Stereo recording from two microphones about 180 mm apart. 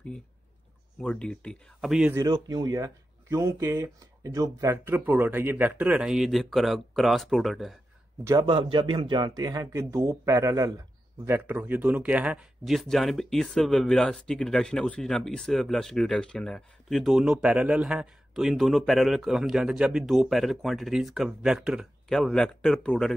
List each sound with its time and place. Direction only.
1.0 s speech: 5° left (ahead or behind)
2.3 s speech: 20° right (ahead or behind); by 7.7 s centre (ahead or behind)
8.2 s speech: 15° right (ahead or behind)
8.5 s a man's voice: 30° right (ahead or behind); by 23.1 s 5° left (ahead or behind)